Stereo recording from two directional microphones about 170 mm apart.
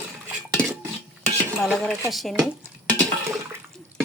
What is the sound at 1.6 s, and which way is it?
Speech, centre (ahead or behind).